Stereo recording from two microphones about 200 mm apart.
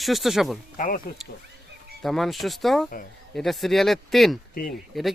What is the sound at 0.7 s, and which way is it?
Speech, 40° left (ahead or behind).